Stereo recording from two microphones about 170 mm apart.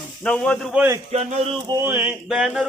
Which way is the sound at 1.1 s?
40° right (ahead or behind).